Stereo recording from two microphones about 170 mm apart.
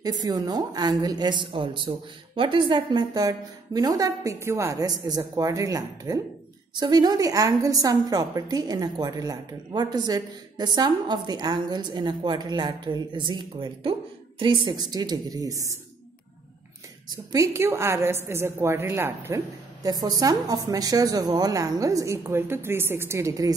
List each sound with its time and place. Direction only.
0.0 s a woman's voice: 25° right (ahead or behind)
17.1 s a woman's voice: 20° right (ahead or behind)